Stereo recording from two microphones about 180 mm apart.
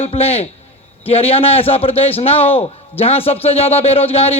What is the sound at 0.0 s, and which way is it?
A man's voice, 35° left (ahead or behind).